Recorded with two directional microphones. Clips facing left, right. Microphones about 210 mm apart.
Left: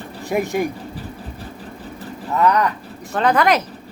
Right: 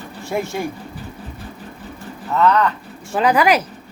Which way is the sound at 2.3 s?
15° left (ahead or behind).